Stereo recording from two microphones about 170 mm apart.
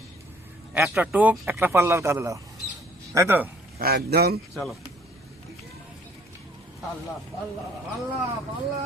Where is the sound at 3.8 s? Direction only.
65° right (ahead or behind).